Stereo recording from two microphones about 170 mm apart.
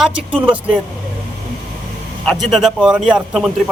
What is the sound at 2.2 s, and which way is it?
Speech, centre (ahead or behind).